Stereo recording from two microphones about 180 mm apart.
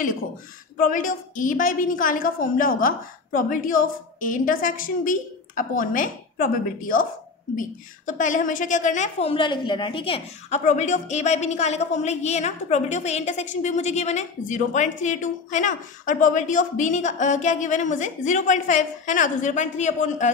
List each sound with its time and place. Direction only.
0.7 s a woman's voice: 50° left (ahead or behind)
8.1 s a woman's voice: 45° left (ahead or behind); by 10.6 s 30° left (ahead or behind)
10.6 s a woman's voice: 40° left (ahead or behind)